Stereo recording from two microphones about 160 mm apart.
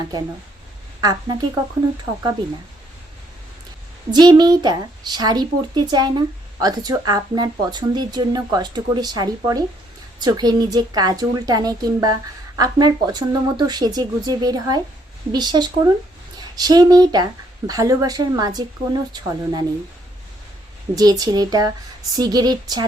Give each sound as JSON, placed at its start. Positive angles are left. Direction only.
{"t": 1.0, "sound": "a woman's voice", "side_deg": -25}
{"t": 4.1, "sound": "a woman's voice", "side_deg": -25}
{"t": 20.9, "sound": "a woman's voice", "side_deg": -25}